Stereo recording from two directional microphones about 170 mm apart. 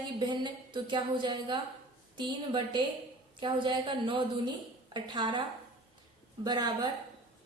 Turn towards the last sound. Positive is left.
turn(degrees=-25)  # may be behind; listen again after turning